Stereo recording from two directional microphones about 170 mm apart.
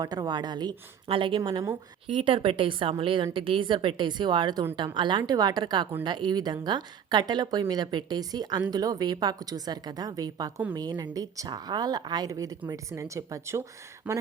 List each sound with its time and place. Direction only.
0.0 s a woman's voice: 25° right (ahead or behind); by 14.2 s 10° right (ahead or behind)